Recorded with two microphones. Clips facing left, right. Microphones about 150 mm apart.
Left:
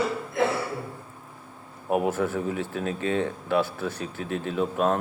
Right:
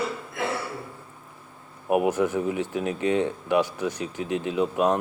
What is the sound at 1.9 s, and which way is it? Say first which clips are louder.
Speech: right 2 dB; 15° right (ahead or behind).